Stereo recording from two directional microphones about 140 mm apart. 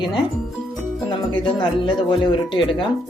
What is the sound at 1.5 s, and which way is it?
Speech, 35° left (ahead or behind).